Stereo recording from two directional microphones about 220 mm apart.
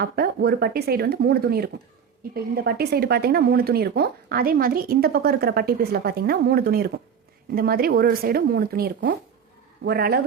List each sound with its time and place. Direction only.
0.0 s speech: 45° right (ahead or behind)